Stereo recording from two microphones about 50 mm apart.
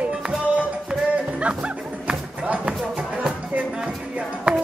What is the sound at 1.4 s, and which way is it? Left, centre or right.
Music, right.